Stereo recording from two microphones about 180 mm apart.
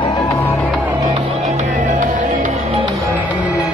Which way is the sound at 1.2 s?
35° right (ahead or behind).